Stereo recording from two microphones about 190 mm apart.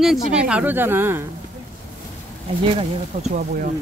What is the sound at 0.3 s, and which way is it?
Speech, 5° right (ahead or behind).